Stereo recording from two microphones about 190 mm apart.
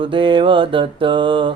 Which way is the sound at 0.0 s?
25° right (ahead or behind).